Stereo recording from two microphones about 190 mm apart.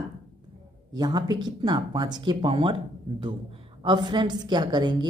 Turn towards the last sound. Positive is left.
turn(degrees=-25)  # may be behind; listen again after turning